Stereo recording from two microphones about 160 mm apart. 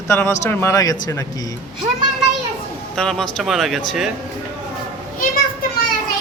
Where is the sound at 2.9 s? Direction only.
5° left (ahead or behind).